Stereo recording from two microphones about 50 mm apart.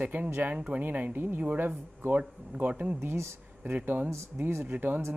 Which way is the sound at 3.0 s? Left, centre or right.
Right.